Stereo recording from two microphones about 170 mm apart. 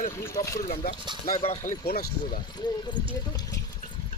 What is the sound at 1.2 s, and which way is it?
Speech, 35° left (ahead or behind).